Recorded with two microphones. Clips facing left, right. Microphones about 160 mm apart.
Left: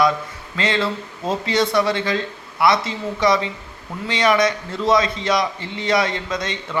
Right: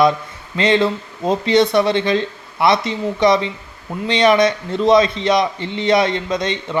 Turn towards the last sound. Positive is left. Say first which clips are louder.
# right 5 dB
turn(degrees=-20)  # may be behind; listen again after turning